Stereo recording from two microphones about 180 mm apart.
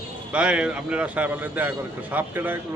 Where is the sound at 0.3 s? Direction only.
5° right (ahead or behind).